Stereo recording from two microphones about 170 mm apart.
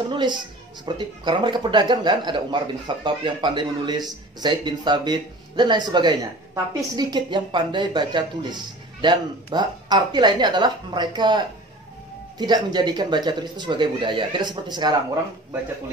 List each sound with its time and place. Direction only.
0.1 s a woman's voice: 25° right (ahead or behind)